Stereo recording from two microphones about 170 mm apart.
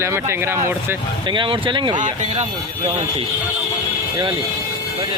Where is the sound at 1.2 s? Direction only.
30° right (ahead or behind).